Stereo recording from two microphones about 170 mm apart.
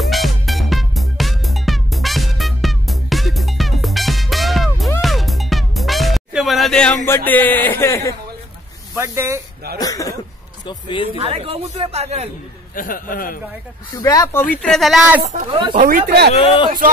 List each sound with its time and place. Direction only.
0.0 s music: centre (ahead or behind)
7.1 s a man's voice: 10° left (ahead or behind)
8.9 s speech: 15° right (ahead or behind)
9.8 s speech: 20° left (ahead or behind)
11.1 s speech: 35° right (ahead or behind)
12.7 s a man's voice: 55° left (ahead or behind)
13.9 s speech: 20° left (ahead or behind)
14.6 s speech: centre (ahead or behind)
15.8 s speech: 60° right (ahead or behind)
16.3 s speech: 35° left (ahead or behind)